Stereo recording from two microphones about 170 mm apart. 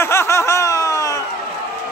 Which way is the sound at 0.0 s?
15° left (ahead or behind).